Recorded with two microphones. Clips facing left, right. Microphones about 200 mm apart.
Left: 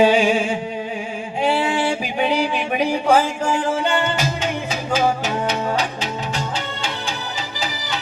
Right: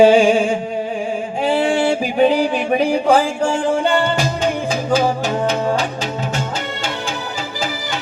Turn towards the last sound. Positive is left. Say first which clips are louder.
# right 3 dB
turn(degrees=-45)  # may be behind; listen again after turning